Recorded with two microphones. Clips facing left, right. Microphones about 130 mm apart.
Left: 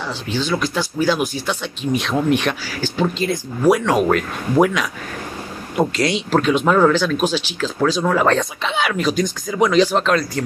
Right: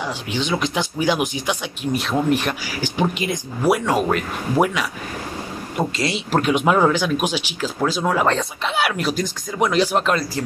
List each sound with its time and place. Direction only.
0.0 s speech: 15° right (ahead or behind)
2.6 s speech: 15° right (ahead or behind)